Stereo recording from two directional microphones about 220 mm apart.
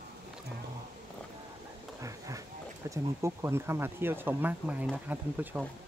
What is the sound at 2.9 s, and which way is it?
Speech, 10° right (ahead or behind).